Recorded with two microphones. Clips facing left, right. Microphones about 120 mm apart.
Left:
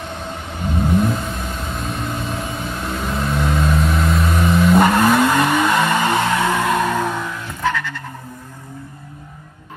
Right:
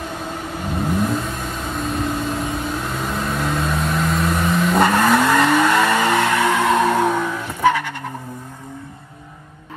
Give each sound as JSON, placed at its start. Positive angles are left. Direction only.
{"t": 0.0, "sound": "vehicle", "side_deg": 0}
{"t": 6.7, "sound": "music", "side_deg": 0}
{"t": 7.6, "sound": "frog", "side_deg": -15}